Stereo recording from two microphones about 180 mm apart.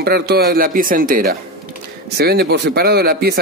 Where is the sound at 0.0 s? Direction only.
60° right (ahead or behind).